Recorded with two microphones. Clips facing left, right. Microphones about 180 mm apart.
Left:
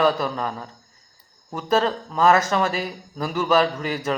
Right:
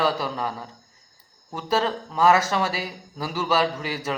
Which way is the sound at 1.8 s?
10° right (ahead or behind).